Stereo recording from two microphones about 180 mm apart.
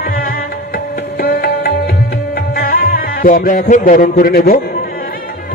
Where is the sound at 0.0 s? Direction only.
55° left (ahead or behind).